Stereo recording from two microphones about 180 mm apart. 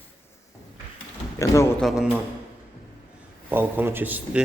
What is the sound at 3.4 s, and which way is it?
Mantra, 10° right (ahead or behind).